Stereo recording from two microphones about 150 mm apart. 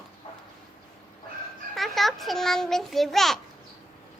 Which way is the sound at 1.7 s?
Centre (ahead or behind).